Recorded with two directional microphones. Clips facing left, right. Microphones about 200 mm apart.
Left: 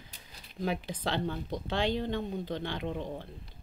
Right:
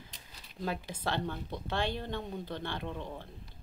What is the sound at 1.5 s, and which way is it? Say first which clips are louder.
Speech: left 5 dB; 15° left (ahead or behind).